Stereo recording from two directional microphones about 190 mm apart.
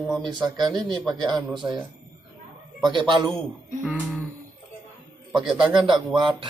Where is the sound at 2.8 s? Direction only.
25° right (ahead or behind).